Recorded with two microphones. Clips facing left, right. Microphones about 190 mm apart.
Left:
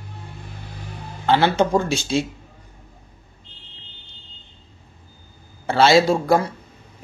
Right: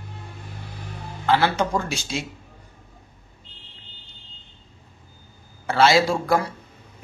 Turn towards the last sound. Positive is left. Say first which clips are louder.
# left 4 dB
turn(degrees=25)  # may be behind; listen again after turning